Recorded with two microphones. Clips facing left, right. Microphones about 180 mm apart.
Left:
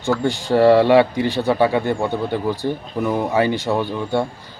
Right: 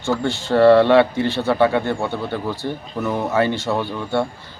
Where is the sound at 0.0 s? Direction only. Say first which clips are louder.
Left 2 dB; 15° left (ahead or behind).